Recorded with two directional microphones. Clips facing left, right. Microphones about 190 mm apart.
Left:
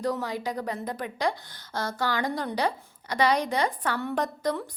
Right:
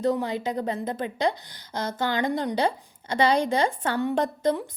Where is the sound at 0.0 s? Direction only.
25° right (ahead or behind).